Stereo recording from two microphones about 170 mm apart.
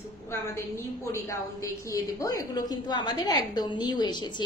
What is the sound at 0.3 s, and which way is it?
A woman's voice, 15° left (ahead or behind).